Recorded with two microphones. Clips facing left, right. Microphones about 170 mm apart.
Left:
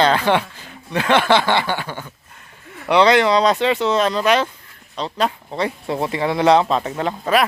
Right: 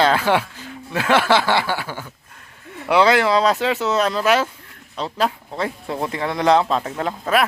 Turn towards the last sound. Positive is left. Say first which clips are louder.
# left 2 dB
turn(degrees=0)  # may be behind; listen again after turning